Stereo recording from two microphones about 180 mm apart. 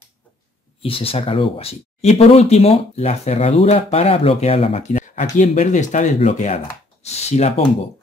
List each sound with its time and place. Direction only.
0.8 s speech: 30° left (ahead or behind)